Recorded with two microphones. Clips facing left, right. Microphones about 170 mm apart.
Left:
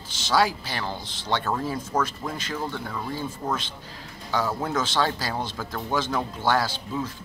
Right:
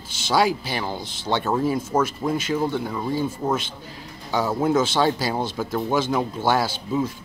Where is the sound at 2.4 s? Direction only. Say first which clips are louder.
Right 6 dB; 10° right (ahead or behind).